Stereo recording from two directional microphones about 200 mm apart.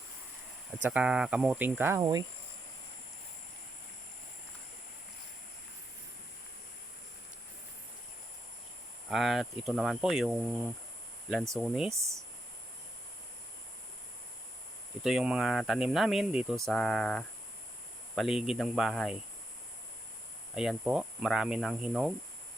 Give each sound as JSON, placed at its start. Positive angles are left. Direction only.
{"t": 0.7, "sound": "speech", "side_deg": -5}
{"t": 9.0, "sound": "speech", "side_deg": 0}
{"t": 15.0, "sound": "speech", "side_deg": -5}
{"t": 20.6, "sound": "speech", "side_deg": -5}